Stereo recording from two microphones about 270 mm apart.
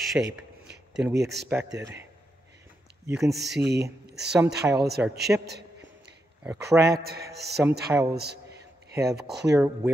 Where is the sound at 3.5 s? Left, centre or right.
Right.